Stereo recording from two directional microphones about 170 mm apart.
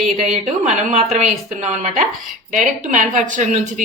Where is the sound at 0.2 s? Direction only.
40° right (ahead or behind).